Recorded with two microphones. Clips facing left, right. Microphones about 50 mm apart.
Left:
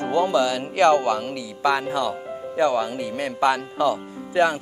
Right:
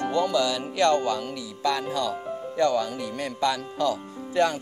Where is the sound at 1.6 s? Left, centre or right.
Left.